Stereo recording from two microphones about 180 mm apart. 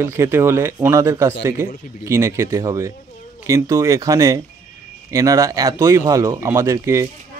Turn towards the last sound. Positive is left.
turn(degrees=-15)  # may be behind; listen again after turning